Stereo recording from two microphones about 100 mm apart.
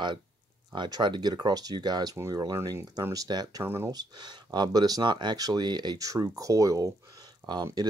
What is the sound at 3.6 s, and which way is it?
Speech, 25° right (ahead or behind).